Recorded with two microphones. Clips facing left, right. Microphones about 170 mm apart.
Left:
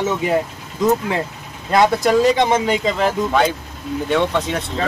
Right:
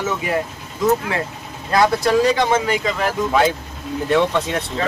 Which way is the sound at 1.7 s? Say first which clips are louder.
Left 1 dB; 20° left (ahead or behind).